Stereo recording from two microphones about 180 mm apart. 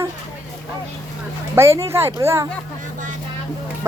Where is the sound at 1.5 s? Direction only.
15° right (ahead or behind).